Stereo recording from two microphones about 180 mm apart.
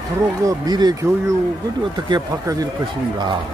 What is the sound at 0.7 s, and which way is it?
Speech, 20° right (ahead or behind).